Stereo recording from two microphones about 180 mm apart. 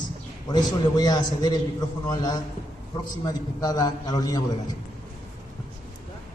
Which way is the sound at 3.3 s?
20° left (ahead or behind).